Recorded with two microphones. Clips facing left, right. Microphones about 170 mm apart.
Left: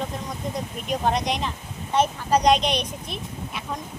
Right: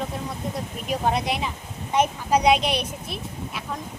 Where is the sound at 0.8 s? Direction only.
5° right (ahead or behind).